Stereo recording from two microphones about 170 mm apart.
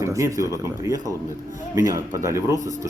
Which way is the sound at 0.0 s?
20° right (ahead or behind).